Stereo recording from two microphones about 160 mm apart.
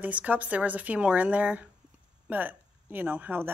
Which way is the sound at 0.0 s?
10° right (ahead or behind).